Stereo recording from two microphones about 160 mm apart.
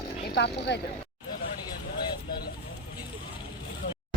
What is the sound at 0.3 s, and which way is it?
Speech, 90° left.